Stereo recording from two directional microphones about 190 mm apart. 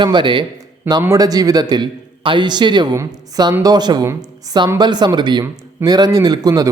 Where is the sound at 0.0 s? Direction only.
25° right (ahead or behind).